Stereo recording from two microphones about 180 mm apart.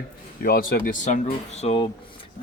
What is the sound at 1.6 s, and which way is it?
Speech, 30° left (ahead or behind).